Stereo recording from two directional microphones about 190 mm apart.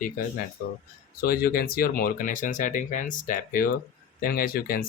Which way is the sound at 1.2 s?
50° left (ahead or behind).